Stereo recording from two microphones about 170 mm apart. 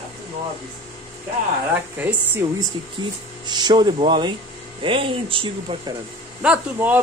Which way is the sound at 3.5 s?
25° right (ahead or behind).